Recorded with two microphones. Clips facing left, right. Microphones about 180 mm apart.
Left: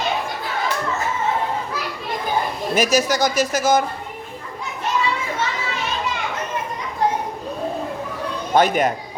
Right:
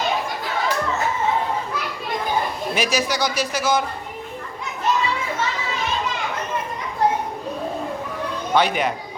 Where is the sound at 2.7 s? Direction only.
45° left (ahead or behind).